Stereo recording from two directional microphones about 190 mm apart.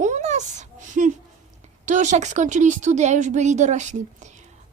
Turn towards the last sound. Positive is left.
turn(degrees=-40)  # may be behind; listen again after turning